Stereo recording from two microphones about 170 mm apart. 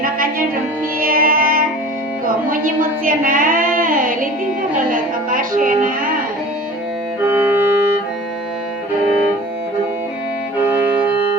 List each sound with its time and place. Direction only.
0.0 s music: 60° right (ahead or behind)
2.2 s a sound: 55° right (ahead or behind)
4.9 s music: 55° right (ahead or behind)
7.3 s music: 10° right (ahead or behind)